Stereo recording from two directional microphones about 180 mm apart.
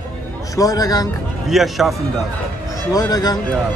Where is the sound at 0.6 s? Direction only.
20° left (ahead or behind).